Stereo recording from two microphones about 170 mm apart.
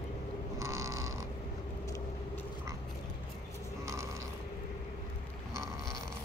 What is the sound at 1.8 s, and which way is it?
Vehicle, 20° left (ahead or behind).